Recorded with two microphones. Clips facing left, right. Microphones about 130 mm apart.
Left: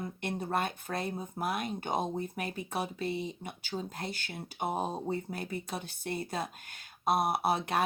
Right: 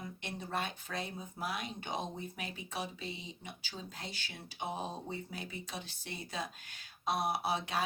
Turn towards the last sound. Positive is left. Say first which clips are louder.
# left 5 dB
turn(degrees=55)  # may be behind; listen again after turning